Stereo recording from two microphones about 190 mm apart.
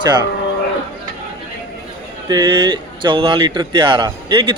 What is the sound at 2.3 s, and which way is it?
Speech, 20° right (ahead or behind).